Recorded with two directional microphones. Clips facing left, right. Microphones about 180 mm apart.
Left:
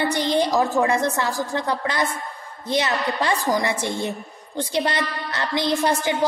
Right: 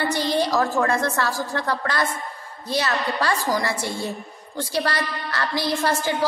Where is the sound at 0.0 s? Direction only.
20° left (ahead or behind).